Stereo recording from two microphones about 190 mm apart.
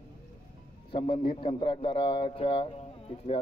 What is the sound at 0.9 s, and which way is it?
A man's voice, 25° left (ahead or behind).